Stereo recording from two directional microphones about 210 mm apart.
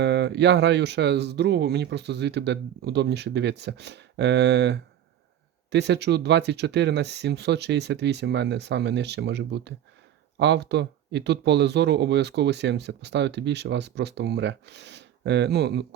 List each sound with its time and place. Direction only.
0.0 s speech: 55° right (ahead or behind)